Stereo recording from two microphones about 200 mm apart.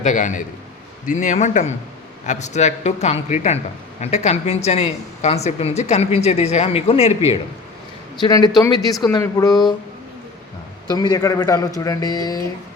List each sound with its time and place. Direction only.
0.0 s a woman's voice: 40° left (ahead or behind)
8.2 s speech: 20° left (ahead or behind)
10.8 s speech: 20° left (ahead or behind)